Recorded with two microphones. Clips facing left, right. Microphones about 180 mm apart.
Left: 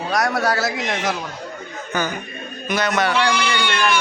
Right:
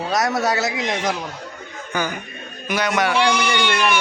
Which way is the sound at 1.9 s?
10° right (ahead or behind).